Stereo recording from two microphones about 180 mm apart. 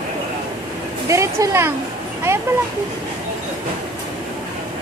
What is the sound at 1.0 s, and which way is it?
Speech, 15° right (ahead or behind).